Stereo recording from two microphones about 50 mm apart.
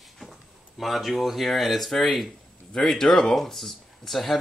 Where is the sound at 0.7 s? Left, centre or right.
Centre.